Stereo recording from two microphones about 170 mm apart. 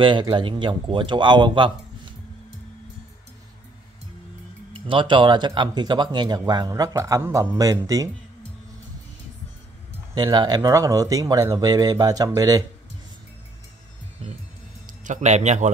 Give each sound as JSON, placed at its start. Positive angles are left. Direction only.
{"t": 0.0, "sound": "speech", "side_deg": -25}
{"t": 4.7, "sound": "speech", "side_deg": -30}
{"t": 10.1, "sound": "speech", "side_deg": -25}
{"t": 15.0, "sound": "speech", "side_deg": -45}